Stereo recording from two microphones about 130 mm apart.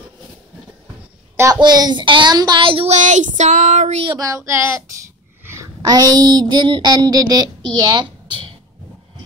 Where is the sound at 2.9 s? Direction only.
65° right (ahead or behind).